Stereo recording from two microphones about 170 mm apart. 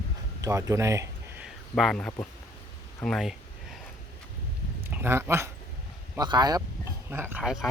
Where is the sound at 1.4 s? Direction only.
Centre (ahead or behind).